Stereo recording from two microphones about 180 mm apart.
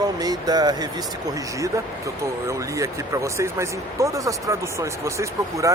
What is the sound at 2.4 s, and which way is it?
Speech, 15° right (ahead or behind).